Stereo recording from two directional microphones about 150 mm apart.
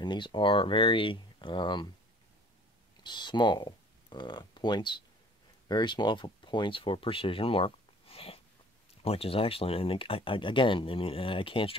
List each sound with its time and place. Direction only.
0.0 s speech: 30° left (ahead or behind)
3.0 s speech: 30° left (ahead or behind)